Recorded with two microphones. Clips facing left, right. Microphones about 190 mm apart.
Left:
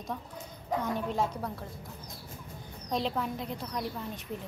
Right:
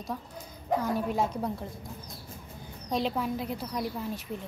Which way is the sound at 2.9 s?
5° right (ahead or behind).